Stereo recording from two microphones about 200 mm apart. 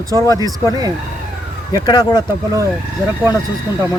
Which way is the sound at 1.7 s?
20° left (ahead or behind).